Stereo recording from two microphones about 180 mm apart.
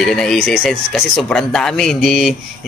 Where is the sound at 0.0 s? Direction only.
5° left (ahead or behind).